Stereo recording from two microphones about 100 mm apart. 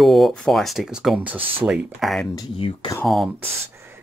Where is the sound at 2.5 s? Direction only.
60° left (ahead or behind).